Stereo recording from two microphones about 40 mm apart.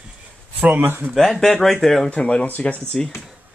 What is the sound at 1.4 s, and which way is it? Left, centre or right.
Speech, centre.